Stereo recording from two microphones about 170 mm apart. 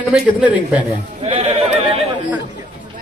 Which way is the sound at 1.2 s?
40° right (ahead or behind).